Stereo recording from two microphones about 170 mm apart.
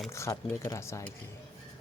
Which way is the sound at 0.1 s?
15° left (ahead or behind).